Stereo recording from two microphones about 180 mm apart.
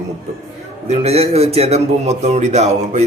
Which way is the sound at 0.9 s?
35° right (ahead or behind).